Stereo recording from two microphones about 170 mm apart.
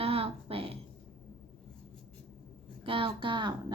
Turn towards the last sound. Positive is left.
turn(degrees=-25)  # may be behind; listen again after turning